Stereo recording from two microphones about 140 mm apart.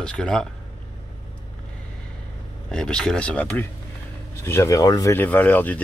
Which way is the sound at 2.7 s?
5° left (ahead or behind).